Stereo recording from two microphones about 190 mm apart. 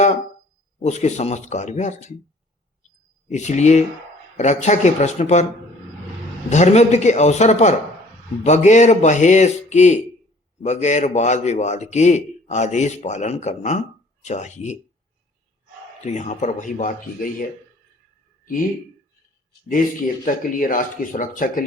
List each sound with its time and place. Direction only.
0.9 s a man's voice: 35° left (ahead or behind)
3.2 s a man's voice: 35° left (ahead or behind)
6.5 s a man's voice: 35° left (ahead or behind)
16.1 s a man's voice: 40° left (ahead or behind)
20.2 s speech: 45° left (ahead or behind)